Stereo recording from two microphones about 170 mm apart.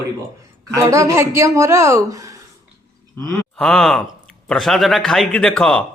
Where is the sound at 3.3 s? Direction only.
5° left (ahead or behind).